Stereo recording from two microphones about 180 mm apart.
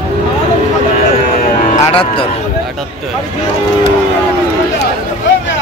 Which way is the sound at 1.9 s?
30° left (ahead or behind).